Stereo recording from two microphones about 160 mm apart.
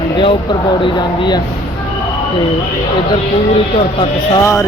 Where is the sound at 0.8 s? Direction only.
30° left (ahead or behind).